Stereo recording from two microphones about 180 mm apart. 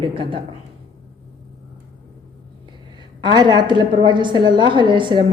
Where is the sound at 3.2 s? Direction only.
25° right (ahead or behind).